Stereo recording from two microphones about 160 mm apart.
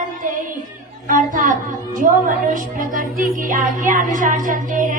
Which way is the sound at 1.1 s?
55° right (ahead or behind).